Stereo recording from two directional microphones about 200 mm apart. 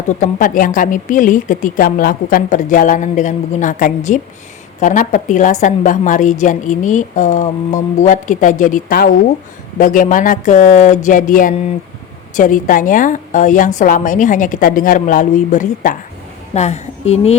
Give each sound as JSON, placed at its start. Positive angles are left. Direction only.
{"t": 0.2, "sound": "a woman's voice", "side_deg": 40}